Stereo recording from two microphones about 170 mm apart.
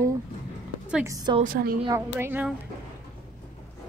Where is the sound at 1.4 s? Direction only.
55° right (ahead or behind).